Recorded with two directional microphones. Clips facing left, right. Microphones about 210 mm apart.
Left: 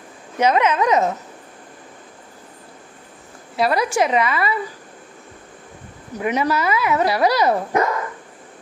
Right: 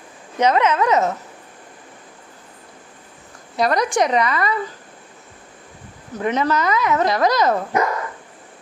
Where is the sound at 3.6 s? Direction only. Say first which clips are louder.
Even; 5° left (ahead or behind).